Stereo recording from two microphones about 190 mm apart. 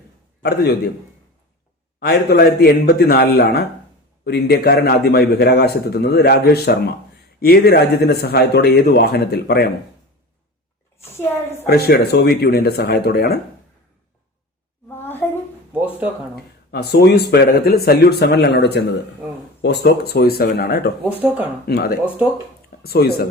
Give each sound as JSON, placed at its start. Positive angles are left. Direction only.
{"t": 0.4, "sound": "speech", "side_deg": 55}
{"t": 2.0, "sound": "speech", "side_deg": 55}
{"t": 11.6, "sound": "speech", "side_deg": 55}
{"t": 14.8, "sound": "a sound", "side_deg": 10}
{"t": 16.3, "sound": "speech", "side_deg": 60}
{"t": 21.0, "sound": "speech", "side_deg": -10}
{"t": 21.7, "sound": "speech", "side_deg": 55}